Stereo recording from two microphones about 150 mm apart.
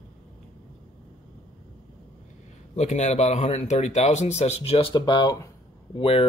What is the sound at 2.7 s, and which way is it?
Speech, 50° left (ahead or behind).